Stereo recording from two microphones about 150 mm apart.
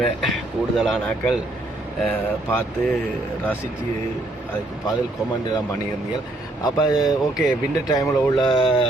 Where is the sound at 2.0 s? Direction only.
10° left (ahead or behind).